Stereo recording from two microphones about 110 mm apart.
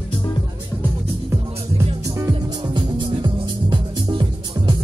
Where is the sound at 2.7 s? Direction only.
45° right (ahead or behind).